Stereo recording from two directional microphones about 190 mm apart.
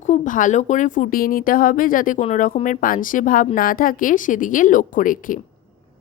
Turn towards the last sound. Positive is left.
turn(degrees=45)  # may be behind; listen again after turning